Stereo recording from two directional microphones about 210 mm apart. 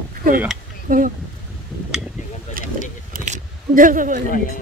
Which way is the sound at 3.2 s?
40° right (ahead or behind).